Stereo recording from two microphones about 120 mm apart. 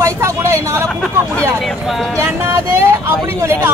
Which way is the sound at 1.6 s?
Centre (ahead or behind).